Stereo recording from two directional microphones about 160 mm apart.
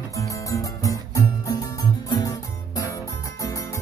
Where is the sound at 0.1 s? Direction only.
20° left (ahead or behind).